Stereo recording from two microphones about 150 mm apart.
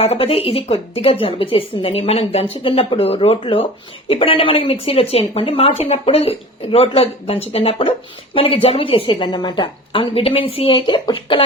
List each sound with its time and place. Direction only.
0.0 s a woman's voice: 40° left (ahead or behind)